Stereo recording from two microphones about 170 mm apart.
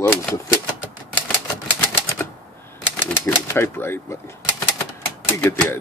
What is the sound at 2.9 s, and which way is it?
Speech, 15° left (ahead or behind).